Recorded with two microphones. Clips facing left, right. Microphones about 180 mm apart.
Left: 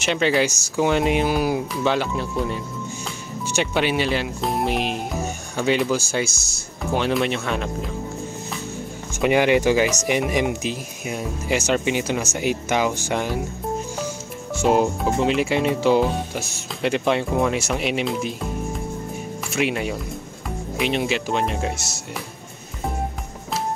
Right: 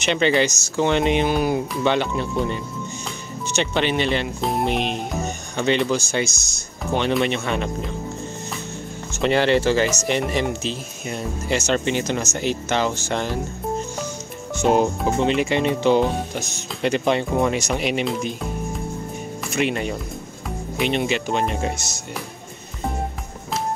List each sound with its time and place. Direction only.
0.0 s speech: 5° left (ahead or behind)
9.2 s speech: 10° left (ahead or behind)